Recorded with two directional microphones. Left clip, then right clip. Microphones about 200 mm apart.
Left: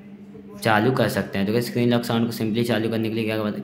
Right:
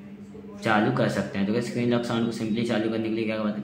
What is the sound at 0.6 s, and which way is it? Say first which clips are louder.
Speech: left 4 dB; 40° left (ahead or behind).